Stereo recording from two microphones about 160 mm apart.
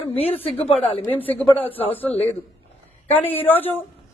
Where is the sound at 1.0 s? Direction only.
10° left (ahead or behind).